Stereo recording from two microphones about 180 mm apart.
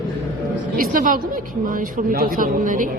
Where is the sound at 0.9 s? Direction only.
50° right (ahead or behind).